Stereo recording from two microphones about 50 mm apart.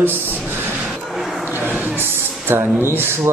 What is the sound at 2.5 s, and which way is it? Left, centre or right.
Speech, right.